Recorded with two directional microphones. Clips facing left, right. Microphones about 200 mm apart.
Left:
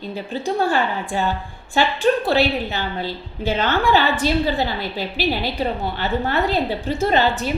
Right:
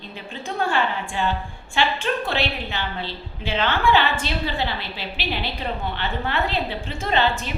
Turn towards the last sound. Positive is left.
turn(degrees=40)  # may be behind; listen again after turning